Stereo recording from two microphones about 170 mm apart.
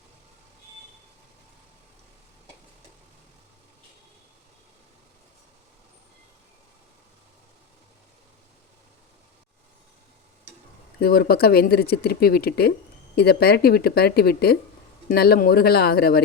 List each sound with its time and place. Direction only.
11.0 s speech: 60° left (ahead or behind)